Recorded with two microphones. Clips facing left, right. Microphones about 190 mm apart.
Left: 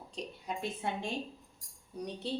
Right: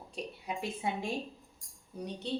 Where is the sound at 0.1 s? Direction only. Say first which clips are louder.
Right 1 dB; 10° right (ahead or behind).